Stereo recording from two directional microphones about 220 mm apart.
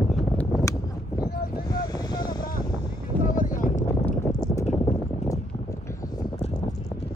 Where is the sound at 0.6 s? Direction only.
15° left (ahead or behind).